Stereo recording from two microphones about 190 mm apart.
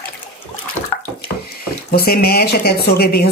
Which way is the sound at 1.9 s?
55° left (ahead or behind).